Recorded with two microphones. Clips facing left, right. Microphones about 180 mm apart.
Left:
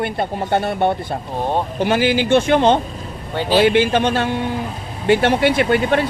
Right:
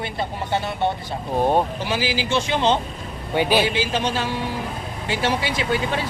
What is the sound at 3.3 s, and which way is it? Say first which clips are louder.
Speech: even; 15° right (ahead or behind).